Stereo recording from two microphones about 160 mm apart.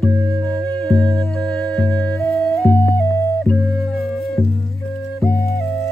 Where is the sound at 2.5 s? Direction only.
5° left (ahead or behind).